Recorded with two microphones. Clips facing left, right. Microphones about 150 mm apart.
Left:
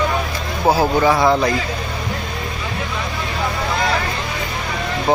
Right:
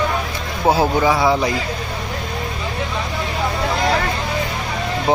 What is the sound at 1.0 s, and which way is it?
Speech, 10° right (ahead or behind).